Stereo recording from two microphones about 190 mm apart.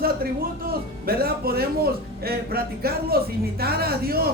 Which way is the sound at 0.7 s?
50° right (ahead or behind).